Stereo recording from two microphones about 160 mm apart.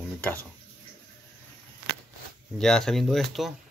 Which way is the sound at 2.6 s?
5° left (ahead or behind).